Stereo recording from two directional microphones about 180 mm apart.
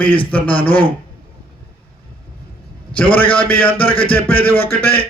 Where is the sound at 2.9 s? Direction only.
10° left (ahead or behind).